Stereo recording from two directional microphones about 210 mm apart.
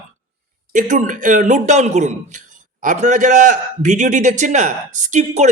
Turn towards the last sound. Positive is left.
turn(degrees=-35)  # may be behind; listen again after turning